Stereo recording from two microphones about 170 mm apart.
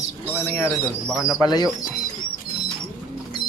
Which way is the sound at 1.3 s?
20° left (ahead or behind).